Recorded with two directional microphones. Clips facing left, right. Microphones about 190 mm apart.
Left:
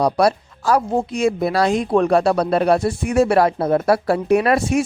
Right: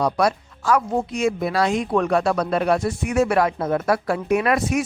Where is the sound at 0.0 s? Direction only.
35° left (ahead or behind).